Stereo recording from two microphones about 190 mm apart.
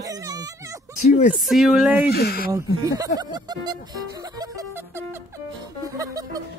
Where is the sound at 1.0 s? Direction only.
40° left (ahead or behind).